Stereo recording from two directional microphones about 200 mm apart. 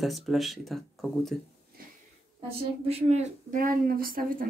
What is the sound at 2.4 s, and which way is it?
A woman's voice, 30° right (ahead or behind).